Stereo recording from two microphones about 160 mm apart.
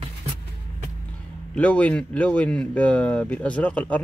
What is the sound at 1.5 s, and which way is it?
Speech, 10° left (ahead or behind).